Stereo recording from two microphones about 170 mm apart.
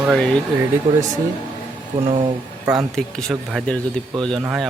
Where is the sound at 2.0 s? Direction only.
30° right (ahead or behind).